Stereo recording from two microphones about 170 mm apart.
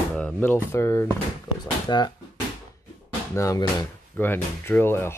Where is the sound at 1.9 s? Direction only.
25° left (ahead or behind).